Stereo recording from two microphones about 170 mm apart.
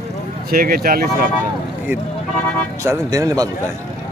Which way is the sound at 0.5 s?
60° right (ahead or behind).